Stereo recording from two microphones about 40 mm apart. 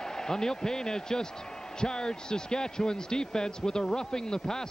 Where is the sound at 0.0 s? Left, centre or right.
Centre.